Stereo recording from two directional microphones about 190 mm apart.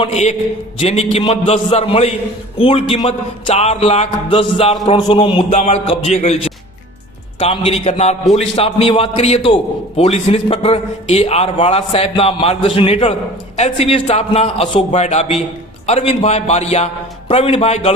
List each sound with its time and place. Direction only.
0.0 s a man's voice: 35° left (ahead or behind)